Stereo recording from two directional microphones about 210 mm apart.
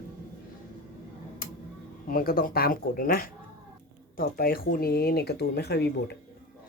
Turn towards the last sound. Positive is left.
turn(degrees=50)  # may be behind; listen again after turning